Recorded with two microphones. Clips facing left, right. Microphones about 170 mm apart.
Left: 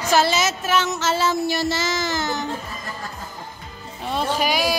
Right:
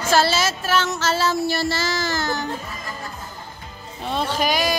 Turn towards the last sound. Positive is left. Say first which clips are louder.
# even
turn(degrees=10)  # may be behind; listen again after turning